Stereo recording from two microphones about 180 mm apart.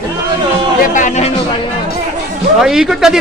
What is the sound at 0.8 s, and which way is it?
Speech, 45° left (ahead or behind).